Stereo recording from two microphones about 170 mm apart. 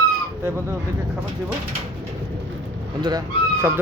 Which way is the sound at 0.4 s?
15° right (ahead or behind).